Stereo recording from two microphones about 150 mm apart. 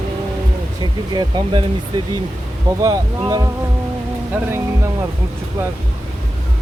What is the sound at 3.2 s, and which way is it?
Speech, 25° right (ahead or behind).